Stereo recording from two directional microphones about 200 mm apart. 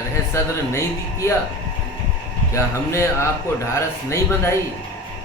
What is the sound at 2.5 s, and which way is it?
Speech, 15° left (ahead or behind).